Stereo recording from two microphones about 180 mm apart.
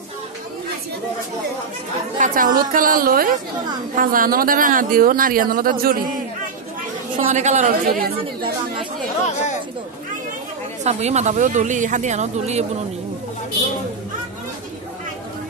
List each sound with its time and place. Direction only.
2.1 s speech: 45° right (ahead or behind)
7.2 s speech: 40° right (ahead or behind)
8.2 s speech: 25° right (ahead or behind)
10.8 s speech: 40° right (ahead or behind)